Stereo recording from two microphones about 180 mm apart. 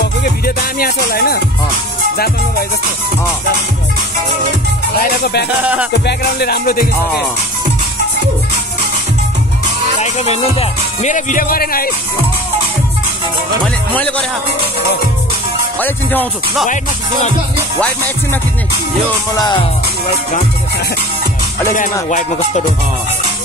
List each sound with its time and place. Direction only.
0.2 s music: 55° left (ahead or behind)
5.2 s music: 65° left (ahead or behind)
9.9 s speech: 40° left (ahead or behind); by 11.9 s 55° left (ahead or behind)
13.9 s music: 5° left (ahead or behind)
15.8 s music: 10° left (ahead or behind)
16.6 s music: 45° left (ahead or behind)
17.7 s music: 10° left (ahead or behind)
19.3 s music: 25° left (ahead or behind)